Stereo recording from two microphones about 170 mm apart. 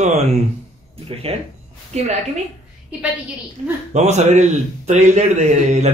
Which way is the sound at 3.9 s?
40° right (ahead or behind).